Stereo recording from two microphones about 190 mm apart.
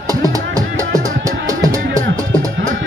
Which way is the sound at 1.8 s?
50° right (ahead or behind).